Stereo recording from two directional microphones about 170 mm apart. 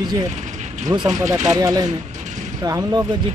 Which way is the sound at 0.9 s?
20° right (ahead or behind).